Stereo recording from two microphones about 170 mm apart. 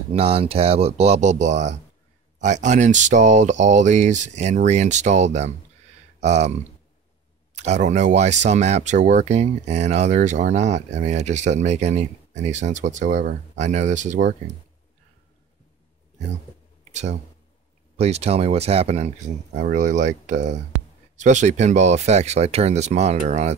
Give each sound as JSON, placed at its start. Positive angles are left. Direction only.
{"t": 0.1, "sound": "speech", "side_deg": -35}
{"t": 7.5, "sound": "speech", "side_deg": -40}
{"t": 16.9, "sound": "speech", "side_deg": -40}